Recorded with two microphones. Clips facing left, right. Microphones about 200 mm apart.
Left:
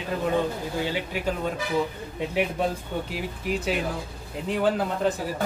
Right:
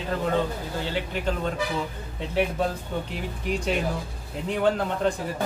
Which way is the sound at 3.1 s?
5° left (ahead or behind).